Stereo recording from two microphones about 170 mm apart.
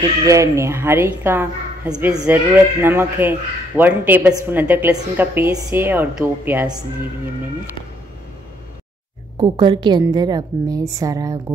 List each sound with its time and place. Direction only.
0.3 s speech: 15° right (ahead or behind)
9.4 s a woman's voice: 25° right (ahead or behind)